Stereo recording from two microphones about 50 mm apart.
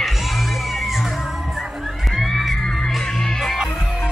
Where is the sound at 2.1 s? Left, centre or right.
Centre.